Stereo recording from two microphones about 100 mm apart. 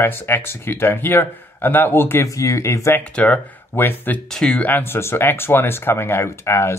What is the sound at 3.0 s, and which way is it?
Speech, 15° left (ahead or behind).